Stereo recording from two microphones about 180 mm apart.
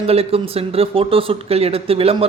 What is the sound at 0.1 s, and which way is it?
Speech, 35° right (ahead or behind).